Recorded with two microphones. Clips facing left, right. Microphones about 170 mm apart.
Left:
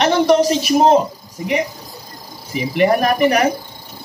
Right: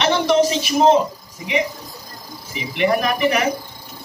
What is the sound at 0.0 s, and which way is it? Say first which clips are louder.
Speech: left 3 dB; 45° left (ahead or behind).